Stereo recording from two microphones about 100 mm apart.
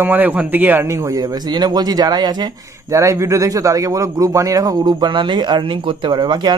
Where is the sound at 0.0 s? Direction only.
20° right (ahead or behind).